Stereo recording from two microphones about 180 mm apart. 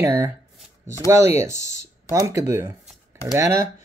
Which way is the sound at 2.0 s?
15° right (ahead or behind).